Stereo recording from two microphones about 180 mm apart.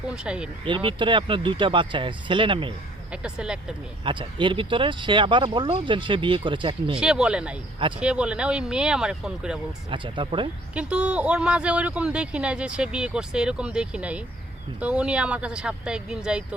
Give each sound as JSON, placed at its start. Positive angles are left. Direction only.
{"t": 0.2, "sound": "speech", "side_deg": -5}
{"t": 0.6, "sound": "speech", "side_deg": -30}
{"t": 3.1, "sound": "speech", "side_deg": -5}
{"t": 4.0, "sound": "speech", "side_deg": -30}
{"t": 6.9, "sound": "speech", "side_deg": -5}
{"t": 9.9, "sound": "speech", "side_deg": -25}
{"t": 10.8, "sound": "speech", "side_deg": -5}